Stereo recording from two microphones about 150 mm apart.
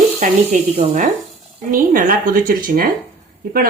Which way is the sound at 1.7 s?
65° right (ahead or behind).